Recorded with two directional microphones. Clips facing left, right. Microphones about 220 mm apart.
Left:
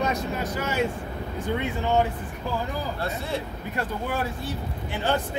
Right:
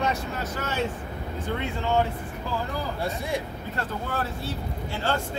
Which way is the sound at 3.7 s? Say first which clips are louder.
Left 2 dB; 15° left (ahead or behind).